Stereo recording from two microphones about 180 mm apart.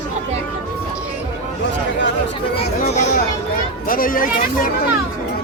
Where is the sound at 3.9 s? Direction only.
50° left (ahead or behind).